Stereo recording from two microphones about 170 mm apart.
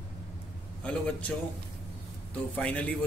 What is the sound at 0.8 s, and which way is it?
Speech, 5° left (ahead or behind).